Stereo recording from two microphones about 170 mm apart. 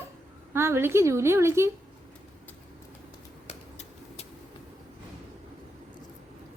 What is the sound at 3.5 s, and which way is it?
Vehicle, 40° left (ahead or behind).